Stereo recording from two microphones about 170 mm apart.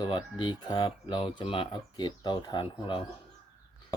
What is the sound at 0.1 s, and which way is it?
Speech, 30° left (ahead or behind).